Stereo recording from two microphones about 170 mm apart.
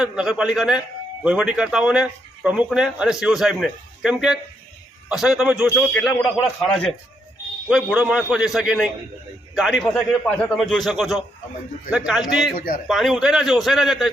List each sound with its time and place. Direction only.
0.0 s speech: 5° right (ahead or behind)
12.5 s speech: 50° left (ahead or behind)
12.9 s speech: centre (ahead or behind)